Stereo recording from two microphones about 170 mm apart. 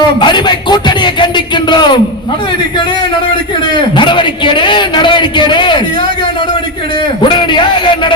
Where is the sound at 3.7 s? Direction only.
30° left (ahead or behind).